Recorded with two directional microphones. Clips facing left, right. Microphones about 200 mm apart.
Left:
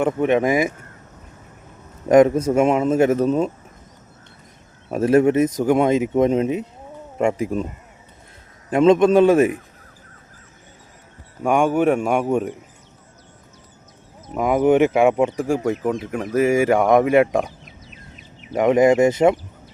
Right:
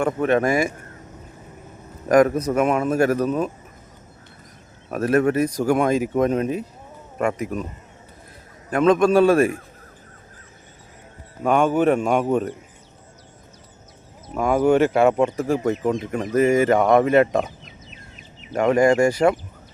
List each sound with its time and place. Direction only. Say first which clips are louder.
0.0 s speech: left 2 dB; 20° left (ahead or behind)
2.0 s speech: left 3 dB; 25° left (ahead or behind)
4.9 s speech: left 3 dB; 25° left (ahead or behind)
8.7 s speech: left 3 dB; 25° left (ahead or behind)
11.4 s speech: left 1 dB; 15° left (ahead or behind)
14.3 s speech: left 1 dB; 15° left (ahead or behind)
18.5 s speech: left 2 dB; 20° left (ahead or behind)